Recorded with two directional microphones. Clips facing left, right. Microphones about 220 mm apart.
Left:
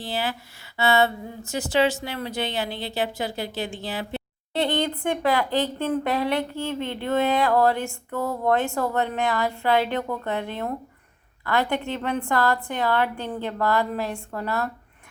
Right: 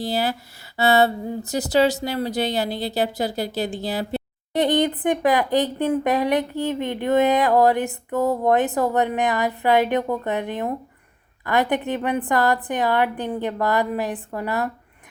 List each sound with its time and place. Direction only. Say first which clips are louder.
0.0 s speech: right 5 dB; 40° right (ahead or behind)
4.5 s speech: right 5 dB; 20° right (ahead or behind)